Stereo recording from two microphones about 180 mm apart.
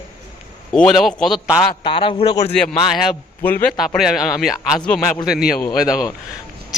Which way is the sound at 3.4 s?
10° left (ahead or behind).